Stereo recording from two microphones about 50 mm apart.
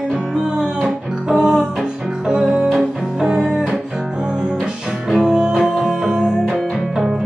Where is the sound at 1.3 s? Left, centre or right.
Centre.